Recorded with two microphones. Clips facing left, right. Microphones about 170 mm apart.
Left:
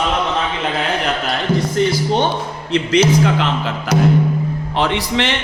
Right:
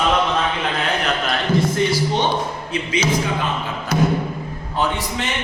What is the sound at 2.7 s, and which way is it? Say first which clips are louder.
A man's voice: left 8 dB; 70° left (ahead or behind).